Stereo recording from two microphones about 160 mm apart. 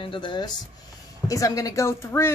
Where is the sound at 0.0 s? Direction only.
30° left (ahead or behind).